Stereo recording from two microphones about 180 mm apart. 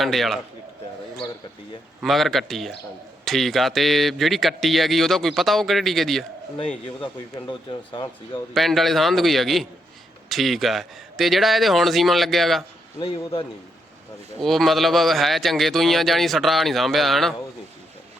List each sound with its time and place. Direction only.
0.0 s speech: centre (ahead or behind)
2.0 s speech: centre (ahead or behind)
7.0 s speech: 25° left (ahead or behind)
8.5 s speech: centre (ahead or behind)
13.0 s speech: 30° left (ahead or behind)
14.4 s speech: centre (ahead or behind)